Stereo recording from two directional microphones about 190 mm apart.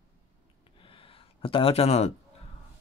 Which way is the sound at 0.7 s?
30° left (ahead or behind).